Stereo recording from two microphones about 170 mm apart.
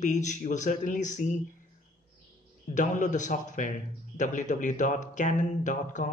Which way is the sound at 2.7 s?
50° left (ahead or behind).